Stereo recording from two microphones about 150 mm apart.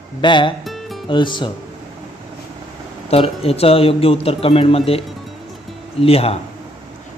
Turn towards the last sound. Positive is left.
turn(degrees=40)  # may be behind; listen again after turning